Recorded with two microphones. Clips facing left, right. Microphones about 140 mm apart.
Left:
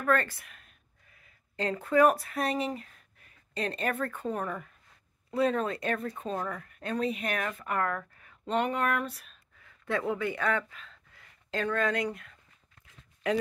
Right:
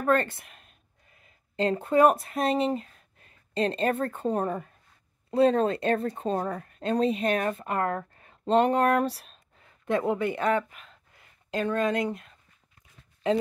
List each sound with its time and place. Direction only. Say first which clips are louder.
0.0 s speech: right 3 dB; 25° right (ahead or behind)